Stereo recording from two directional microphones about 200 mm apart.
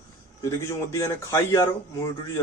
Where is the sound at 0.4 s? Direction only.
15° left (ahead or behind).